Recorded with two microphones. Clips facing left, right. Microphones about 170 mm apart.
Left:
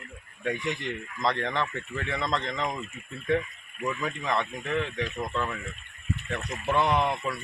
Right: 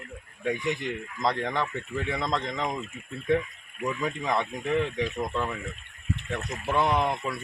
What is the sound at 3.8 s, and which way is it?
Speech, 15° right (ahead or behind).